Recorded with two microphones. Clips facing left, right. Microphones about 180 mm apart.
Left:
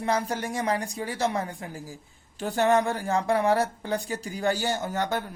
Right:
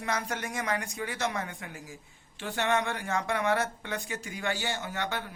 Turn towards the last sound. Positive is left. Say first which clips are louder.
# left 6 dB
turn(degrees=40)  # may be behind; listen again after turning